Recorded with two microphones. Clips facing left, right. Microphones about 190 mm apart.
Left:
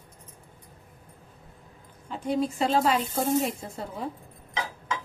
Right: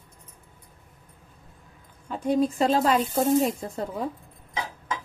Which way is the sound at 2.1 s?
45° right (ahead or behind).